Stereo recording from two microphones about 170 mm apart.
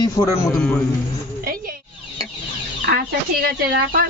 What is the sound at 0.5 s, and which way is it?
Speech, 5° left (ahead or behind).